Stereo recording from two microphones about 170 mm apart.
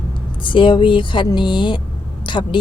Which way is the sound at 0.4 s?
30° left (ahead or behind).